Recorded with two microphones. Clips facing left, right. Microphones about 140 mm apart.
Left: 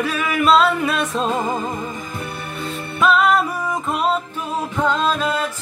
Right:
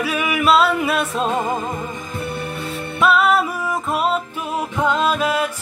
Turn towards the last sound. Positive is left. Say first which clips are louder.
# right 1 dB
turn(degrees=-10)  # may be behind; listen again after turning